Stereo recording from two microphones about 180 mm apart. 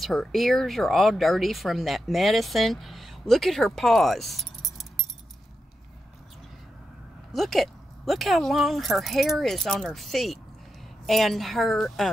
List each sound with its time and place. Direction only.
0.0 s speech: centre (ahead or behind)
7.3 s speech: centre (ahead or behind)